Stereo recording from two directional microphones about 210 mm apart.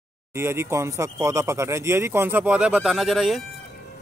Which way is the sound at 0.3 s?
10° right (ahead or behind).